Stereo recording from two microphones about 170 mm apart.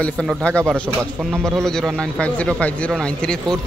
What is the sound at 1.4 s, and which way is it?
Speech, 15° right (ahead or behind).